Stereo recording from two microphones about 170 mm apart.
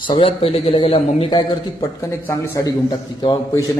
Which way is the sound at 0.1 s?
30° left (ahead or behind).